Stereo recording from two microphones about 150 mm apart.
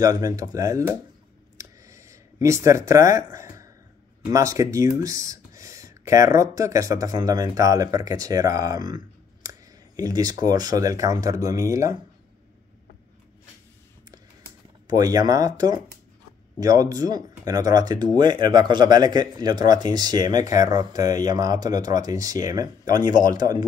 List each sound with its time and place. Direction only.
0.0 s speech: 25° right (ahead or behind)
1.6 s a sound: 20° right (ahead or behind)
4.3 s speech: 20° right (ahead or behind)
14.9 s speech: 25° right (ahead or behind)